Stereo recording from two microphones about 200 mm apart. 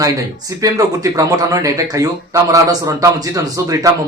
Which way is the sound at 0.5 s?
15° right (ahead or behind).